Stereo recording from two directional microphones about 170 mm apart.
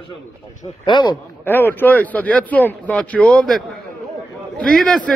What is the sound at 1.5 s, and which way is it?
A man's voice, 10° left (ahead or behind).